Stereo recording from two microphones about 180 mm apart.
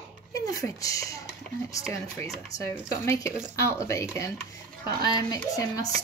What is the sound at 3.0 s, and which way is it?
Speech, 15° left (ahead or behind).